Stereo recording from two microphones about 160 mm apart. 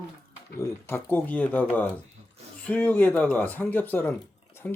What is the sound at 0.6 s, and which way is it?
Speech, 15° left (ahead or behind).